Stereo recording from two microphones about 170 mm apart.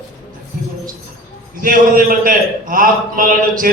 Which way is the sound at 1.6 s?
55° right (ahead or behind).